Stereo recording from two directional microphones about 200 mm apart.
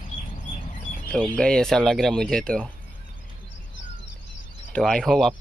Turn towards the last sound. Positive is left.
turn(degrees=0)  # may be behind; listen again after turning